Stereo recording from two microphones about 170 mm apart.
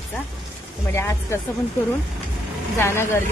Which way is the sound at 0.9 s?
15° left (ahead or behind).